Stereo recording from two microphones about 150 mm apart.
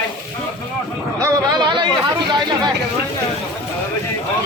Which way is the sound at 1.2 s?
25° right (ahead or behind).